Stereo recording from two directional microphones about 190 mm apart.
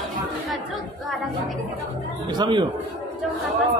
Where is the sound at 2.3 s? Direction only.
20° right (ahead or behind).